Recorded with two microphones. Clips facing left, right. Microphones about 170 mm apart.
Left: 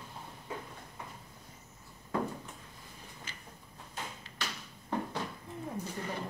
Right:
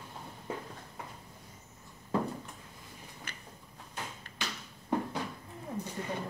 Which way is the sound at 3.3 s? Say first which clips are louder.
Right 2 dB; 60° right (ahead or behind).